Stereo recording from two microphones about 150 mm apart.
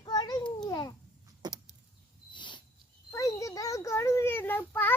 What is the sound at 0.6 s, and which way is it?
Cat, 25° left (ahead or behind).